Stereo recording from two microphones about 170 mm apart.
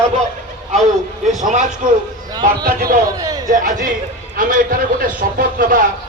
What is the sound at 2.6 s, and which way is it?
Speech, 65° right (ahead or behind).